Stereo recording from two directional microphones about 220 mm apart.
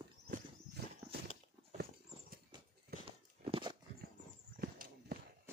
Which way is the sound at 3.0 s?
20° right (ahead or behind).